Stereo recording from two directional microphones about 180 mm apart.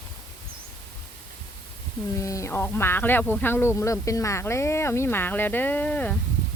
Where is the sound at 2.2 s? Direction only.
15° left (ahead or behind).